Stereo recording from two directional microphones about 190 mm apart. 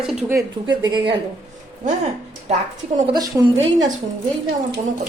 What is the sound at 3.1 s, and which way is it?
Speech, 20° right (ahead or behind).